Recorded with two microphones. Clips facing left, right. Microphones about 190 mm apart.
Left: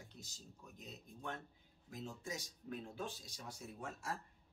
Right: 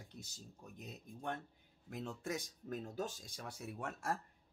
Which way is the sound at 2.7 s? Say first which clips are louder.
Right 3 dB; 40° right (ahead or behind).